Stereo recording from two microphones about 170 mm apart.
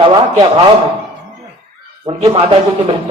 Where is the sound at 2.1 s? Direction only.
35° right (ahead or behind).